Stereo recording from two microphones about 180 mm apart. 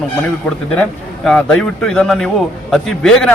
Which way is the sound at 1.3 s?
5° left (ahead or behind).